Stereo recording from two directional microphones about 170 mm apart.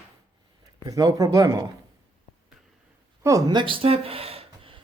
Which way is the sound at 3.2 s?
20° right (ahead or behind).